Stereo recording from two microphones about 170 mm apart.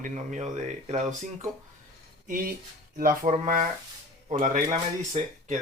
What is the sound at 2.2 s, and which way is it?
Speech, 55° right (ahead or behind).